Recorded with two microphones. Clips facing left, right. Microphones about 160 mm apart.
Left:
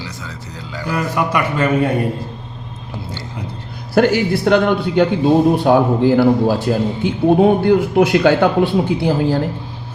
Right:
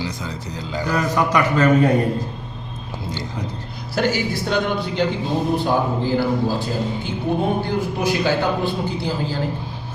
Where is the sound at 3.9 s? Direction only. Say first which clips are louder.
Left 7 dB; 60° left (ahead or behind).